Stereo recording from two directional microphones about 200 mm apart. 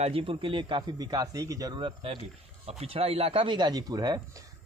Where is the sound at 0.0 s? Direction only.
25° right (ahead or behind).